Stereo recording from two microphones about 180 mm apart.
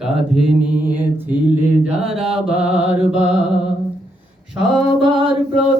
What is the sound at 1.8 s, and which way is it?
Mantra, 5° right (ahead or behind).